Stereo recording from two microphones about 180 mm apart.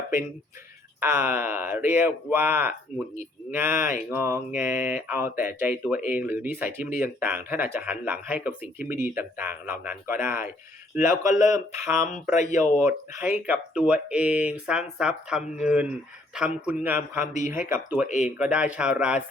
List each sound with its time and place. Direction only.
0.9 s speech: 10° right (ahead or behind)
12.3 s speech: 40° left (ahead or behind)
12.8 s speech: 10° right (ahead or behind)